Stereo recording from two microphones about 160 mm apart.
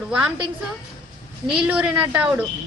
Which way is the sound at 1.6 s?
10° right (ahead or behind).